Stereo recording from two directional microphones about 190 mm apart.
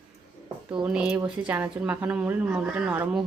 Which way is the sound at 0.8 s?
5° right (ahead or behind).